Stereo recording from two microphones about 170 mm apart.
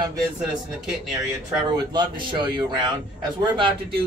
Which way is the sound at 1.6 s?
25° right (ahead or behind).